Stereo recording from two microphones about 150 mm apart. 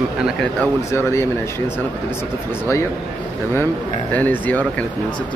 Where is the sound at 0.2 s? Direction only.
Centre (ahead or behind).